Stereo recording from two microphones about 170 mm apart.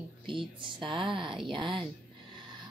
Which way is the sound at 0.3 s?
30° right (ahead or behind).